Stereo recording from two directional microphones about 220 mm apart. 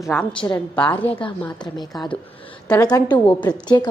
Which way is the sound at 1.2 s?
20° left (ahead or behind).